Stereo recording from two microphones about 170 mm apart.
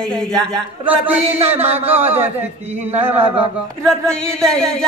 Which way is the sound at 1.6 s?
40° right (ahead or behind).